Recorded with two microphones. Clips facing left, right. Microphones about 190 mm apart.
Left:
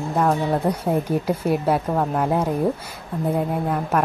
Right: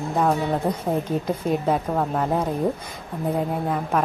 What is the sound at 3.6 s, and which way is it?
Speech, centre (ahead or behind).